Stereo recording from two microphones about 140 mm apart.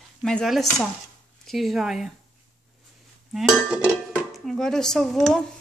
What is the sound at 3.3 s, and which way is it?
Dishes, 5° right (ahead or behind).